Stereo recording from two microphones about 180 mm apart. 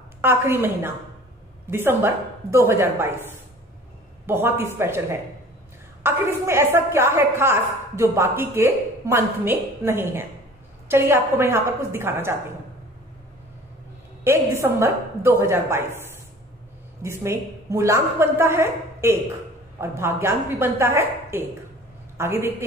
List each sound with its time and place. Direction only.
0.2 s a woman's voice: 15° right (ahead or behind)
14.2 s a woman's voice: 15° right (ahead or behind)